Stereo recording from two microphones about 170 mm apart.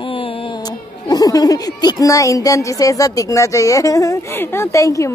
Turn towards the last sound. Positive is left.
turn(degrees=20)  # may be behind; listen again after turning